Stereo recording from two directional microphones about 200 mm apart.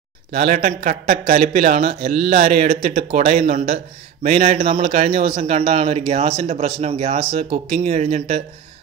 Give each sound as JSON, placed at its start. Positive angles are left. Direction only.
{"t": 0.3, "sound": "speech", "side_deg": -45}